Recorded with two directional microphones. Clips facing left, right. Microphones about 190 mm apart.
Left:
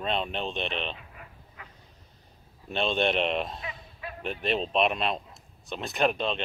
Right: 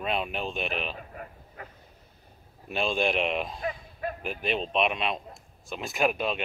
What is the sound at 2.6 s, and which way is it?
Speech, 5° right (ahead or behind).